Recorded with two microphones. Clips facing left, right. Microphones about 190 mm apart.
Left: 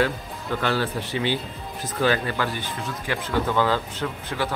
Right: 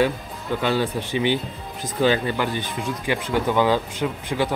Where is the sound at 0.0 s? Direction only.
15° right (ahead or behind).